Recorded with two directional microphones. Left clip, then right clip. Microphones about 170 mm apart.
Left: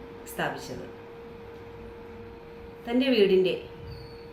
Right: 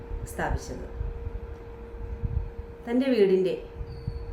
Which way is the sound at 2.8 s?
15° right (ahead or behind).